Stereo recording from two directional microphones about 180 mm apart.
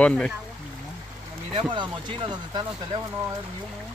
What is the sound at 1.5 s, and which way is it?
Speech, 30° right (ahead or behind).